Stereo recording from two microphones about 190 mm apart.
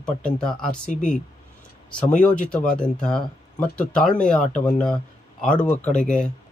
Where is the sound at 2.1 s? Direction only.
40° left (ahead or behind).